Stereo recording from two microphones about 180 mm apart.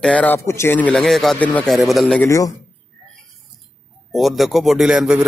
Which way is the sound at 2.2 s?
20° left (ahead or behind).